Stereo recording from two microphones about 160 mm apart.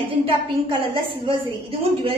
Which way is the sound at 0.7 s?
35° right (ahead or behind).